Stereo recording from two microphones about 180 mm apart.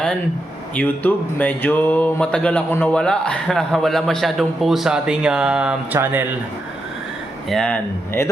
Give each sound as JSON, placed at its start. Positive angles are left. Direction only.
{"t": 0.8, "sound": "speech", "side_deg": 10}
{"t": 7.5, "sound": "speech", "side_deg": 5}